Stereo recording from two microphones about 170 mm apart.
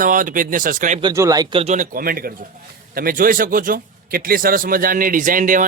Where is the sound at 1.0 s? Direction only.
20° right (ahead or behind).